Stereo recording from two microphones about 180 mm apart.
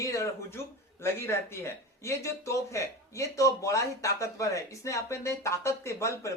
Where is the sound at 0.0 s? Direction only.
20° left (ahead or behind).